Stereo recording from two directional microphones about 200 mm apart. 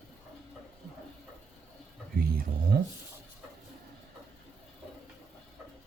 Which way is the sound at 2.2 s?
50° right (ahead or behind).